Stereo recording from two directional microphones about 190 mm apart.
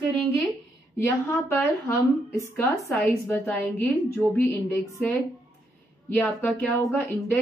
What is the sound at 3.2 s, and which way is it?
A woman's voice, 10° left (ahead or behind).